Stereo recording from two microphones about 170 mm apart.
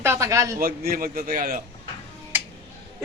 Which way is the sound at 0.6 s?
65° right (ahead or behind).